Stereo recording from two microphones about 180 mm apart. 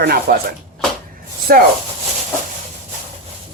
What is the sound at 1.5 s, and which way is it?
Speech, 55° right (ahead or behind).